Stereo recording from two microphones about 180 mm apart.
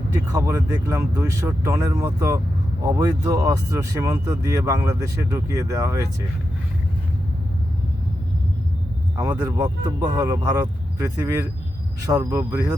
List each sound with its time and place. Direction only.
0.1 s speech: 15° right (ahead or behind)
9.1 s speech: 20° right (ahead or behind)
9.4 s speech: 10° right (ahead or behind)
9.6 s speech: 20° right (ahead or behind)